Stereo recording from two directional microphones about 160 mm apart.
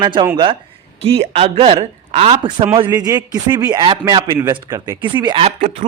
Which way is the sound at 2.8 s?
25° right (ahead or behind).